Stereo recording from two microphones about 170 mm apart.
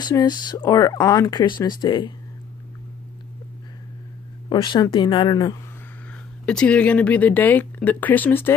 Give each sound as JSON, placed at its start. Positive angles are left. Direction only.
{"t": 0.0, "sound": "speech", "side_deg": 25}
{"t": 4.5, "sound": "speech", "side_deg": 25}
{"t": 6.4, "sound": "speech", "side_deg": 5}